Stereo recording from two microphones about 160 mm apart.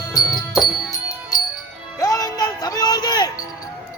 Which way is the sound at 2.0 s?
25° left (ahead or behind).